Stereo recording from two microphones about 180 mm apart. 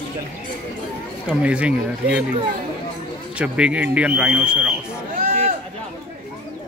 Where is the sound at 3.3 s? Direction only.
5° right (ahead or behind).